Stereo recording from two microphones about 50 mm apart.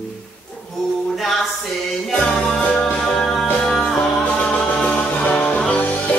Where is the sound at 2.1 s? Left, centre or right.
Centre.